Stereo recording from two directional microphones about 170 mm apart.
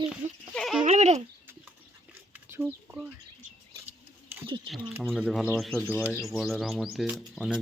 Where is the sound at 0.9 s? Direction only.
40° right (ahead or behind).